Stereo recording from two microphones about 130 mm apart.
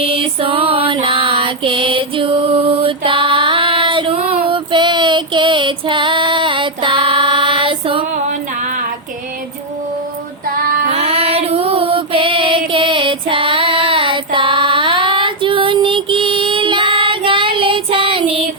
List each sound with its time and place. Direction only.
0.0 s female singing: 45° right (ahead or behind)
10.8 s female singing: 50° right (ahead or behind)